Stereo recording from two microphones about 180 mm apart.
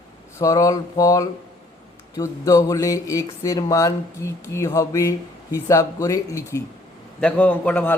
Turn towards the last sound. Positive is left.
turn(degrees=10)  # may be behind; listen again after turning